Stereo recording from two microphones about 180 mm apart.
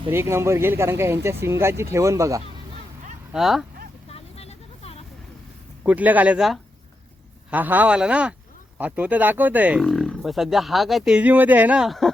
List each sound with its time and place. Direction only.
0.1 s speech: 15° right (ahead or behind)
3.3 s speech: centre (ahead or behind)
4.1 s vehicle: 35° left (ahead or behind)
5.8 s speech: 10° right (ahead or behind)